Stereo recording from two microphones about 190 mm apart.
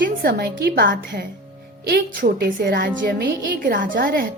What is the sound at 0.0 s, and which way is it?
A woman's voice, 55° right (ahead or behind).